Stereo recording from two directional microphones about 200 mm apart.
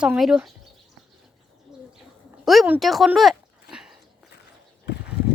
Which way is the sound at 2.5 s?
5° right (ahead or behind).